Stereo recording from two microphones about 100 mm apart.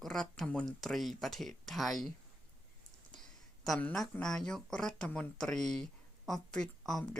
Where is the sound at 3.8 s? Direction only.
10° left (ahead or behind).